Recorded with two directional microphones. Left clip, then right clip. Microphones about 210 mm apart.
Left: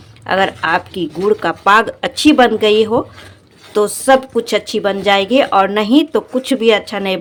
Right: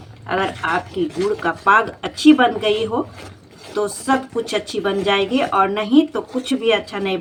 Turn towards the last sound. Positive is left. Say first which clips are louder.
# left 5 dB
turn(degrees=55)  # may be behind; listen again after turning